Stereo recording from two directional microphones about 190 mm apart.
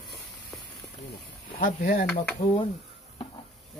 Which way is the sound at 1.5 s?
45° left (ahead or behind).